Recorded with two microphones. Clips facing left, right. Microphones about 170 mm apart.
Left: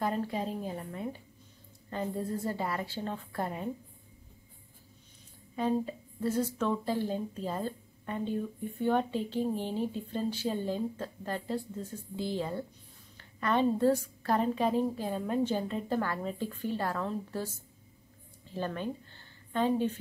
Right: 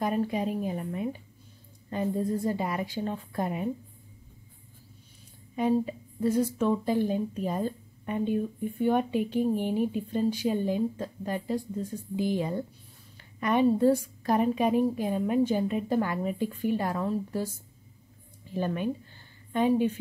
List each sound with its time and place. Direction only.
0.0 s a woman's voice: 15° right (ahead or behind)
5.6 s a woman's voice: 15° right (ahead or behind)
18.4 s a sound: 15° right (ahead or behind)